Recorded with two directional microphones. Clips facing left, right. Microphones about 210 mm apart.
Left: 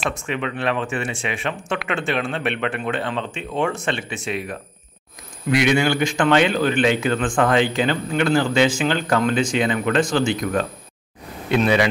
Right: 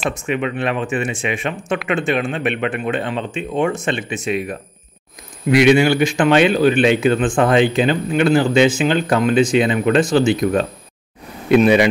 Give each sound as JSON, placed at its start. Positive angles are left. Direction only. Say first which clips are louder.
{"t": 0.1, "sound": "speech", "louder": "right 5 dB", "side_deg": -15}